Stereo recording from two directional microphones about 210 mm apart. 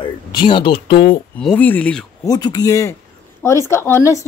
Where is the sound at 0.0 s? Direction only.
25° left (ahead or behind).